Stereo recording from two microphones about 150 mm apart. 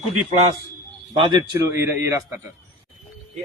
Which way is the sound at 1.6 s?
20° right (ahead or behind).